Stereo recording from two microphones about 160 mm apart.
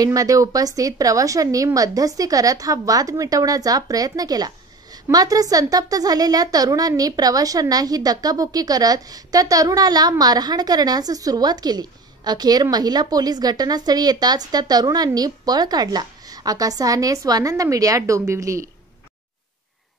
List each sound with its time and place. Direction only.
0.0 s a woman's voice: 20° right (ahead or behind)